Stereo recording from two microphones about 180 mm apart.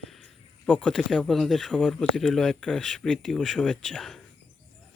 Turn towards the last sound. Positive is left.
turn(degrees=0)  # may be behind; listen again after turning